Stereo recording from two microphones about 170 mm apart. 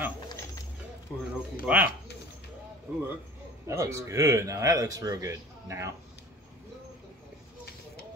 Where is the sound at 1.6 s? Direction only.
10° right (ahead or behind).